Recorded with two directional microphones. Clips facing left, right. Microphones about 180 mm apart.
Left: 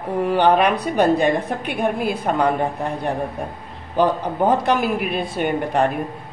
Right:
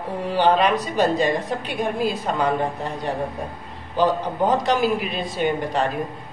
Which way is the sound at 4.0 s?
55° left (ahead or behind).